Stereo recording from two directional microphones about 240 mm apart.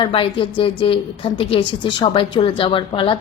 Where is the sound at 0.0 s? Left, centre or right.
Left.